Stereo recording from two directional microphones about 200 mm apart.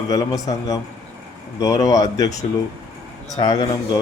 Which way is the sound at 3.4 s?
20° left (ahead or behind).